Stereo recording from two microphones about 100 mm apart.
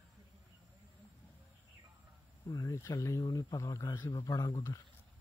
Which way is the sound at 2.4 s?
30° left (ahead or behind).